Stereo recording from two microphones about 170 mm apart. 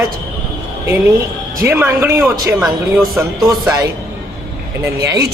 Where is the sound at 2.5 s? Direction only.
5° right (ahead or behind).